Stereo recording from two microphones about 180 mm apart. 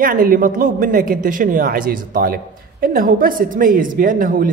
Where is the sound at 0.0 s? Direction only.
50° right (ahead or behind).